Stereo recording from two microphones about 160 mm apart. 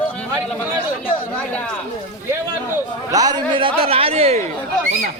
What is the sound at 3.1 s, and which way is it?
A man's voice, 25° right (ahead or behind).